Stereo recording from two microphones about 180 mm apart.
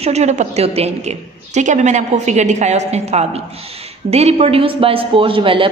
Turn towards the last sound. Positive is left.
turn(degrees=-30)  # may be behind; listen again after turning